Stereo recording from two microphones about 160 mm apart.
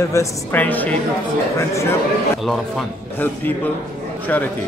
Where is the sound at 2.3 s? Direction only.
Centre (ahead or behind).